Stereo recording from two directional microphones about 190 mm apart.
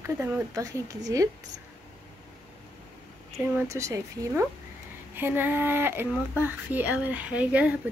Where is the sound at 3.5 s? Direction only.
15° right (ahead or behind).